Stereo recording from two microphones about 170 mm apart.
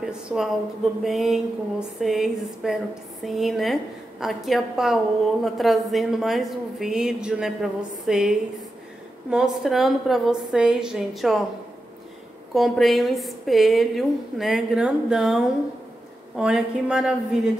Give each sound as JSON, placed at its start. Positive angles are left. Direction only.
{"t": 0.0, "sound": "a woman's voice", "side_deg": -5}
{"t": 12.5, "sound": "a woman's voice", "side_deg": 0}